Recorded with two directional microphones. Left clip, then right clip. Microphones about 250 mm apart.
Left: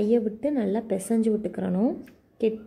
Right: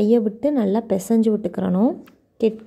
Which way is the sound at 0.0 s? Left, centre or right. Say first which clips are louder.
Right 6 dB; centre.